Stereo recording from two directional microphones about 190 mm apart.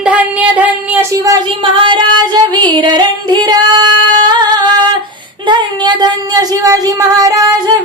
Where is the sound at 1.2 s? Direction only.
20° right (ahead or behind).